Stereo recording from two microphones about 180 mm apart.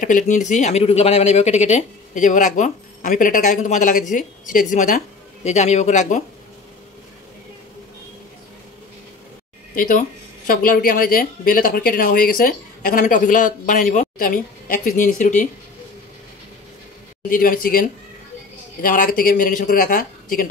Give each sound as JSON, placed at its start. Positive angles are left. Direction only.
{"t": 0.3, "sound": "speech", "side_deg": 40}
{"t": 9.8, "sound": "speech", "side_deg": 45}
{"t": 17.3, "sound": "speech", "side_deg": 50}